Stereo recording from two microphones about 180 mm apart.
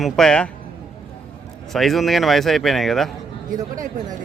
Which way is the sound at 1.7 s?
Centre (ahead or behind).